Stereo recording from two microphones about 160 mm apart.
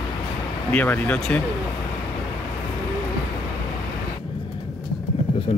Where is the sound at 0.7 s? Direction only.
10° left (ahead or behind).